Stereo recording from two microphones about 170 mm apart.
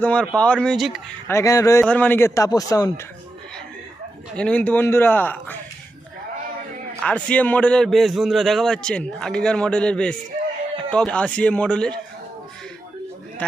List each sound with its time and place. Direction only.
0.0 s a man's voice: 5° left (ahead or behind)
1.3 s a man's voice: 20° left (ahead or behind)
4.4 s a man's voice: 10° left (ahead or behind)
7.0 s a man's voice: 5° left (ahead or behind)
13.4 s a man's voice: 10° left (ahead or behind)